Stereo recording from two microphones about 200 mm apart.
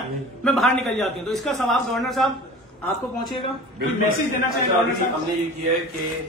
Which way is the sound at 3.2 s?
25° left (ahead or behind).